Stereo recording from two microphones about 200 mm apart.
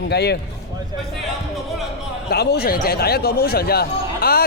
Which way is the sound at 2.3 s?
55° left (ahead or behind).